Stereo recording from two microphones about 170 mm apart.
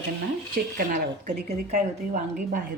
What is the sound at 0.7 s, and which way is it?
A woman's voice, 55° right (ahead or behind).